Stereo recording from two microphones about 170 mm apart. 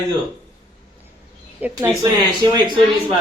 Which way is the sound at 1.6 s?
15° right (ahead or behind).